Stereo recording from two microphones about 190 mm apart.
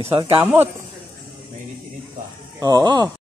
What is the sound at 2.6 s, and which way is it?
Speech, 20° right (ahead or behind).